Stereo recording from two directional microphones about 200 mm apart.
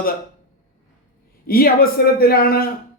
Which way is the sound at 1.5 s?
50° left (ahead or behind).